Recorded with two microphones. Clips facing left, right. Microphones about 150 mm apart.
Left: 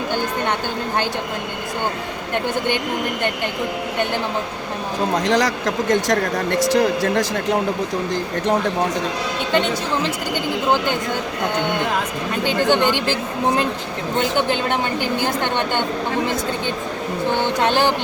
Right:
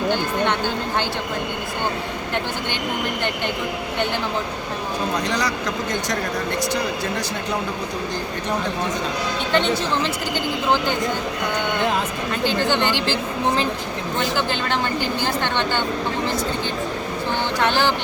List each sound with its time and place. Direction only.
5.2 s speech: 90° left
17.7 s speech: 15° left (ahead or behind)